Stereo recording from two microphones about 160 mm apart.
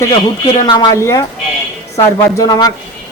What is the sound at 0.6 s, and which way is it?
A man's voice, 25° left (ahead or behind).